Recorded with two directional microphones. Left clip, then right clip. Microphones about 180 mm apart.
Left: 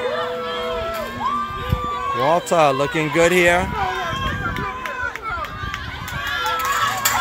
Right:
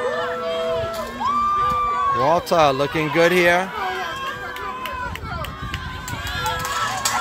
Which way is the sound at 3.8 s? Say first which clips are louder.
Left 3 dB; 65° right (ahead or behind).